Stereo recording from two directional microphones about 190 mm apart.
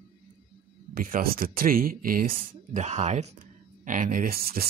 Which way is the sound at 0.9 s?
50° right (ahead or behind).